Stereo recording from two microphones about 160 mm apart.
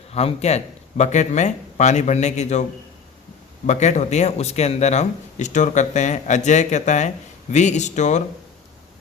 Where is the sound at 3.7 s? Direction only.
45° left (ahead or behind).